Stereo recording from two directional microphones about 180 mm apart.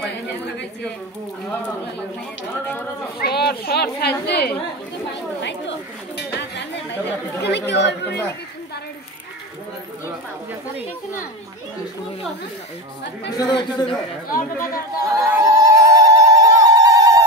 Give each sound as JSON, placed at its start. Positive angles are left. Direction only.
{"t": 3.2, "sound": "a woman's voice", "side_deg": 60}
{"t": 6.1, "sound": "chatter", "side_deg": 70}
{"t": 7.4, "sound": "speech", "side_deg": 70}
{"t": 13.4, "sound": "speech", "side_deg": 25}
{"t": 15.0, "sound": "a sound", "side_deg": -20}